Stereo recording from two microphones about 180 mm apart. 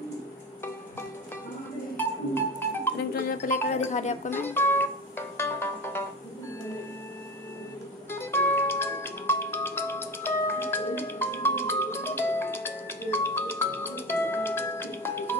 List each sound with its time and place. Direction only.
2.0 s music: 15° left (ahead or behind)
3.2 s a sound: 55° left (ahead or behind)
3.7 s speech: 40° left (ahead or behind)
4.3 s music: 10° left (ahead or behind)
8.1 s music: 10° left (ahead or behind)